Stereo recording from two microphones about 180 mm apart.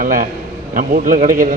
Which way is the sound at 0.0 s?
50° right (ahead or behind).